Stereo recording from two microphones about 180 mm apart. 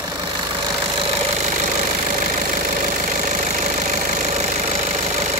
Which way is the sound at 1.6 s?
45° right (ahead or behind).